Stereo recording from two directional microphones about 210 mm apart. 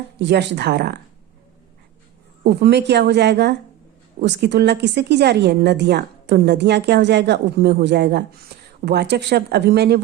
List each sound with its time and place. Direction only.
0.2 s a woman's voice: 55° right (ahead or behind)
2.4 s a woman's voice: 50° right (ahead or behind)